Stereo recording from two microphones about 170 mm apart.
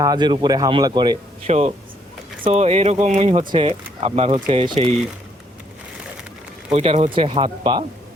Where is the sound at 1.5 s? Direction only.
35° right (ahead or behind).